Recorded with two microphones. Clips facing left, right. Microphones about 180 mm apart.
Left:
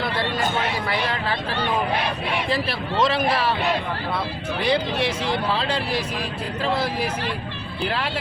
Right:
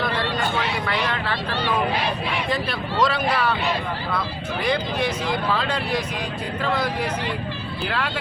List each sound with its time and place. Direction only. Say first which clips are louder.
2.5 s speech: left 1 dB; 25° left (ahead or behind)
4.6 s speech: left 1 dB; 30° left (ahead or behind)